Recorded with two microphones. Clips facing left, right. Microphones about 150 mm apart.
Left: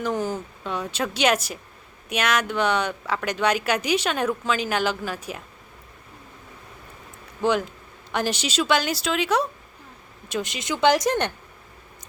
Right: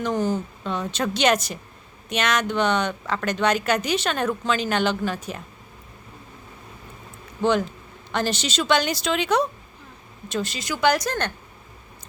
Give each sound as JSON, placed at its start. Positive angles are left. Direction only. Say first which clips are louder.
{"t": 0.0, "sound": "speech", "louder": "right 2 dB", "side_deg": 10}
{"t": 8.1, "sound": "a woman's voice", "louder": "even", "side_deg": 10}